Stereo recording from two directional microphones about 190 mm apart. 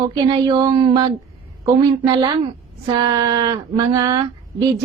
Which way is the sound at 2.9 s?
25° right (ahead or behind).